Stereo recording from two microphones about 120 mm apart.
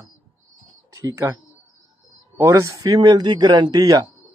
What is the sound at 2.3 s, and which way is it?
Speech, 25° right (ahead or behind).